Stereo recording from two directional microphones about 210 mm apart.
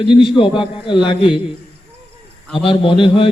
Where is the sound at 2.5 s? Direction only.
25° left (ahead or behind).